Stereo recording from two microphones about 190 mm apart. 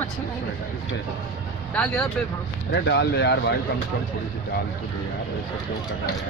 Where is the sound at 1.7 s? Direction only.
5° left (ahead or behind).